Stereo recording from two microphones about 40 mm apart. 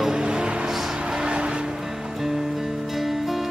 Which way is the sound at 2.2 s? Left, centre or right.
Centre.